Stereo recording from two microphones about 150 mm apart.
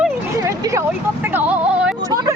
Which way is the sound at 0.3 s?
20° right (ahead or behind).